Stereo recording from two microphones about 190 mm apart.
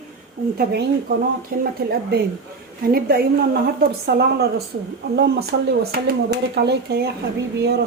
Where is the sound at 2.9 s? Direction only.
55° right (ahead or behind).